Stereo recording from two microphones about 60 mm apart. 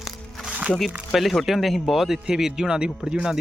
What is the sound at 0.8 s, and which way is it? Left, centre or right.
Speech, centre.